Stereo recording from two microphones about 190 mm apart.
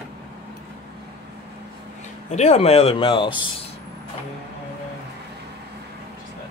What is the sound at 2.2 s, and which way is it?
Speech, 35° left (ahead or behind).